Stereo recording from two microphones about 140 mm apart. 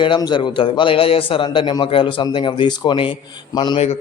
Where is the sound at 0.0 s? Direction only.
35° left (ahead or behind).